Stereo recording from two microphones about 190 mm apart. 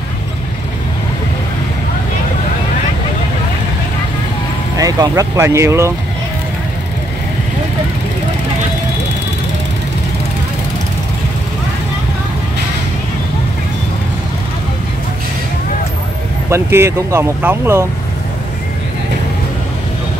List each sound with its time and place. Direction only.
4.7 s speech: 20° right (ahead or behind)
16.4 s speech: 15° right (ahead or behind)